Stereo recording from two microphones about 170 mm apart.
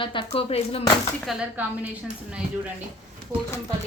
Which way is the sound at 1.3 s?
5° right (ahead or behind).